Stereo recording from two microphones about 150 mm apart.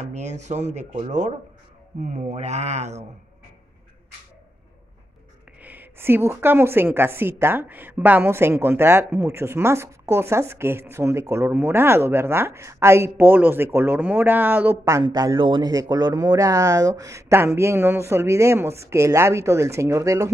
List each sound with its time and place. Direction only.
0.0 s speech: 50° right (ahead or behind)
5.6 s speech: 10° right (ahead or behind)
15.0 s speech: 30° right (ahead or behind)